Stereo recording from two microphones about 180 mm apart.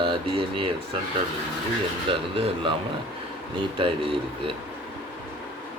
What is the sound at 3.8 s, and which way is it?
Speech, 30° right (ahead or behind).